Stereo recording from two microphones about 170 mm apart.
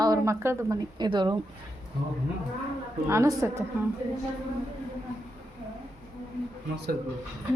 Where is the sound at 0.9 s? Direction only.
25° right (ahead or behind).